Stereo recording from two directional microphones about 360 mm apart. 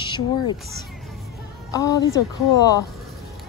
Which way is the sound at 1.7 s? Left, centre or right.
Centre.